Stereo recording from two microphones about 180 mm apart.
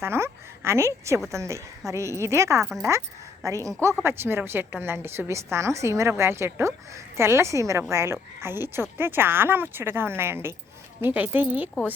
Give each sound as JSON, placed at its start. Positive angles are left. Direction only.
{"t": 0.0, "sound": "a woman's voice", "side_deg": -15}